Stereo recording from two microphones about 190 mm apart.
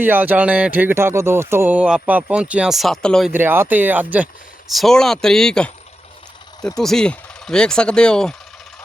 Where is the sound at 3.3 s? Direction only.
10° right (ahead or behind).